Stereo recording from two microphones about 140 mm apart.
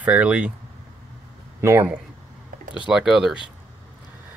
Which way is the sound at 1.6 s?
15° right (ahead or behind).